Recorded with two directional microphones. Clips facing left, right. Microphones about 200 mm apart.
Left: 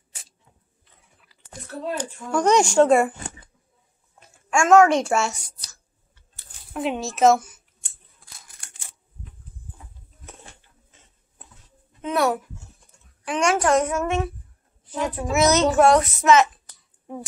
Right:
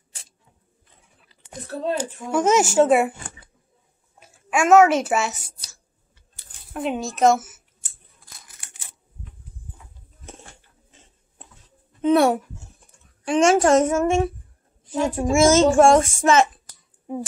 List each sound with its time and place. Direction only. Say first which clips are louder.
1.4 s speech: right 4 dB; 20° right (ahead or behind)
2.1 s a woman's voice: left 1 dB; 5° right (ahead or behind)
4.2 s a sound: even; 5° right (ahead or behind)
6.7 s speech: even; centre (ahead or behind)
12.0 s a woman's voice: right 6 dB; 30° right (ahead or behind)